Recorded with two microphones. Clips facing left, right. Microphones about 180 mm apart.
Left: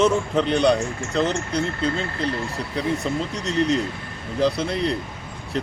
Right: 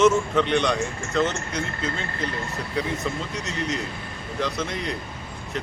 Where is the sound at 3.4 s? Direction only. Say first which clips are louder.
Left 10 dB; 35° left (ahead or behind).